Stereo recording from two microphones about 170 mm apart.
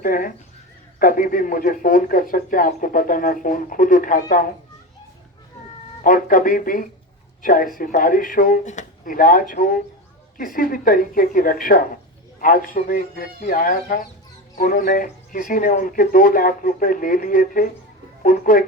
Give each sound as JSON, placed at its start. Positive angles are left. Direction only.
{"t": 0.0, "sound": "speech", "side_deg": 55}
{"t": 6.0, "sound": "speech", "side_deg": 55}